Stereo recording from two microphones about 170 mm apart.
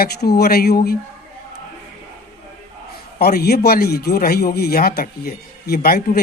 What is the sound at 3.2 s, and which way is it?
A man's voice, 65° left (ahead or behind).